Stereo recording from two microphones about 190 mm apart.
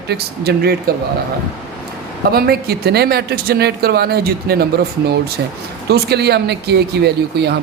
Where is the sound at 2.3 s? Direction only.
55° right (ahead or behind).